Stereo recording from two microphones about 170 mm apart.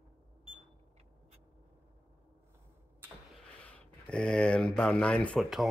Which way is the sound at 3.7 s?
5° left (ahead or behind).